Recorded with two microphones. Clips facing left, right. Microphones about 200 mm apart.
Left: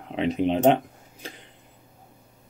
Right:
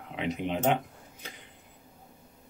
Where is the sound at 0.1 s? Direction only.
25° left (ahead or behind).